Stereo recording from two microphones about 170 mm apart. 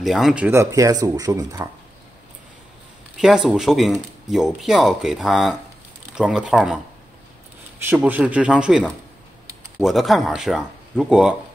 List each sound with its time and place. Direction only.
0.0 s speech: centre (ahead or behind); by 1.7 s 20° right (ahead or behind)
3.2 s speech: 5° right (ahead or behind)
7.8 s speech: 10° right (ahead or behind)